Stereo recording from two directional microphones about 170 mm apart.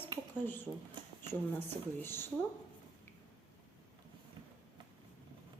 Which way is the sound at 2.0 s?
15° left (ahead or behind).